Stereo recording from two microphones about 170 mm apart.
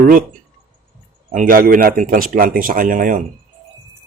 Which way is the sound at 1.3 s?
55° right (ahead or behind).